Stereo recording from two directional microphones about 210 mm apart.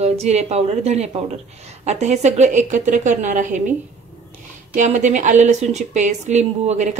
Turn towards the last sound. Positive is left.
turn(degrees=-35)  # may be behind; listen again after turning